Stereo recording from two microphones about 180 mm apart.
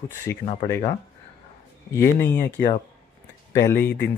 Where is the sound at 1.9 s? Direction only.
15° left (ahead or behind).